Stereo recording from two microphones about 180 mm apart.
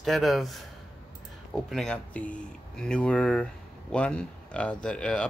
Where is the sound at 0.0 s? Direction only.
Centre (ahead or behind).